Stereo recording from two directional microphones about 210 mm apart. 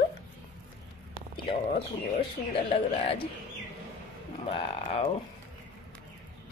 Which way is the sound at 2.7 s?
25° left (ahead or behind).